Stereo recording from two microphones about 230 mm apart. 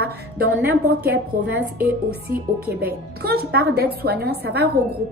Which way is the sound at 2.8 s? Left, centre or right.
Right.